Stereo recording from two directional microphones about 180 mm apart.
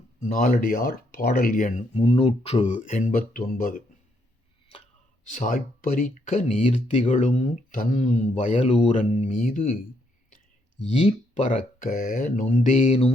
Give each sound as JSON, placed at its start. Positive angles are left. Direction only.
{"t": 0.2, "sound": "speech", "side_deg": 45}
{"t": 5.3, "sound": "speech", "side_deg": 45}
{"t": 10.8, "sound": "speech", "side_deg": 35}